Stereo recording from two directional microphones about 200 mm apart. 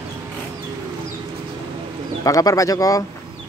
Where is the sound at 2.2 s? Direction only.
15° left (ahead or behind).